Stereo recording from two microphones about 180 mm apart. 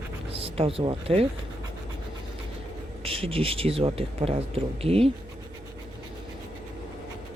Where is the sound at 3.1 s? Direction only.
30° right (ahead or behind).